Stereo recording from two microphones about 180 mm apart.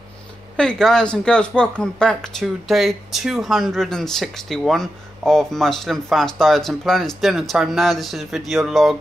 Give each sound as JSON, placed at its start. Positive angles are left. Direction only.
{"t": 0.6, "sound": "speech", "side_deg": 5}